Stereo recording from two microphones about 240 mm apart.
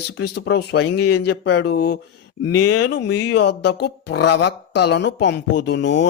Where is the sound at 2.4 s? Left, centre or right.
Left.